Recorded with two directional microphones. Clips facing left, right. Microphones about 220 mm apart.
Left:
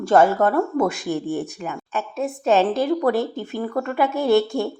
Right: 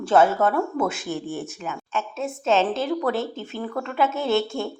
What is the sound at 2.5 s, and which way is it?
A woman's voice, 15° left (ahead or behind).